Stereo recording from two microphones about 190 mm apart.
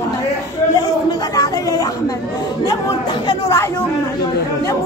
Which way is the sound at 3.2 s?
15° left (ahead or behind).